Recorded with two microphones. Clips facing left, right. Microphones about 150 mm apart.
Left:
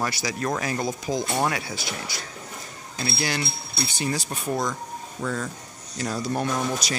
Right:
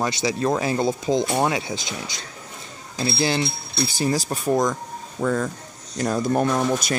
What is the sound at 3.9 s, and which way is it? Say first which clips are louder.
Speech: right 6 dB; 35° right (ahead or behind).